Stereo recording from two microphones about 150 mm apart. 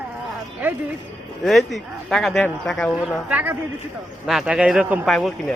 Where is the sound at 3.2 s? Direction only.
10° right (ahead or behind).